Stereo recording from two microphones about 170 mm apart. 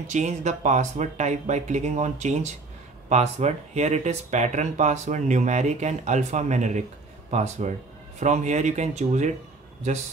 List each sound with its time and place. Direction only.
0.1 s speech: 45° right (ahead or behind)